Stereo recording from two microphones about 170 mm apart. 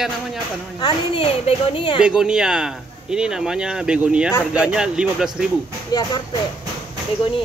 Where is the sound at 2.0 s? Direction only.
5° right (ahead or behind).